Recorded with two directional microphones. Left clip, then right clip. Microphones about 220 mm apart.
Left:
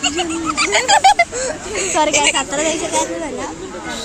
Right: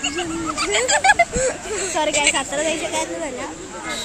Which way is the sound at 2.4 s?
10° right (ahead or behind).